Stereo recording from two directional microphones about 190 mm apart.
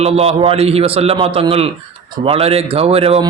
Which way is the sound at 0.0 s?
30° right (ahead or behind).